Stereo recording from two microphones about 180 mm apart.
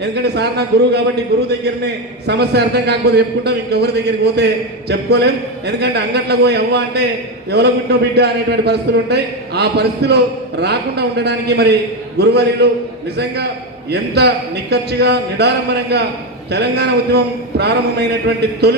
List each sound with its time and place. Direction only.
0.0 s a man's voice: 65° right (ahead or behind)